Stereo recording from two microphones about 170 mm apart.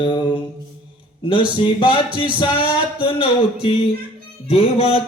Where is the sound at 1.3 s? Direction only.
30° left (ahead or behind).